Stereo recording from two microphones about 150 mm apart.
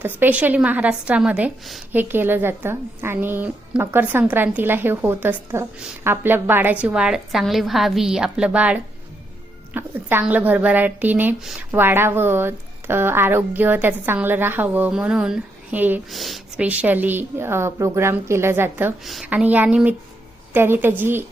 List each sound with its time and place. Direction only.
0.0 s a woman's voice: 10° right (ahead or behind)
16.0 s speech: centre (ahead or behind)
16.6 s speech: 10° right (ahead or behind)
19.0 s a woman's voice: centre (ahead or behind)